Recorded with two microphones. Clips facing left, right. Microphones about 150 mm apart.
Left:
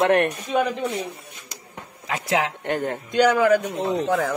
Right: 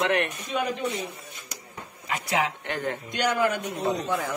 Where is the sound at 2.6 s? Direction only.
50° left (ahead or behind).